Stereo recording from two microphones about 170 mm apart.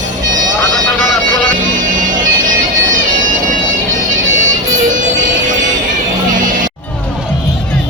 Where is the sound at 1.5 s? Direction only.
50° right (ahead or behind).